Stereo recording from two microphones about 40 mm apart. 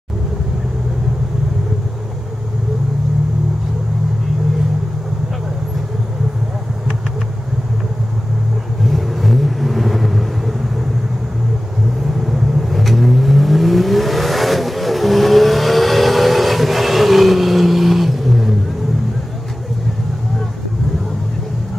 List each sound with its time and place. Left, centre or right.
8.8 s vehicle: centre
12.3 s vehicle: centre